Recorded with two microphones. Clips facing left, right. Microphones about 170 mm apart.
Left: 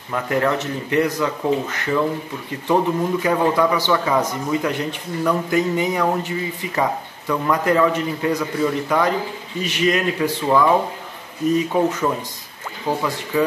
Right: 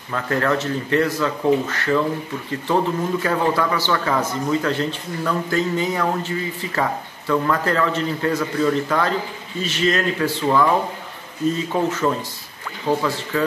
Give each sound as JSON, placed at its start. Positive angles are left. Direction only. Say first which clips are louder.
{"t": 0.1, "sound": "a man's voice", "louder": "left 1 dB", "side_deg": 15}
{"t": 11.7, "sound": "a man's voice", "louder": "left 1 dB", "side_deg": 15}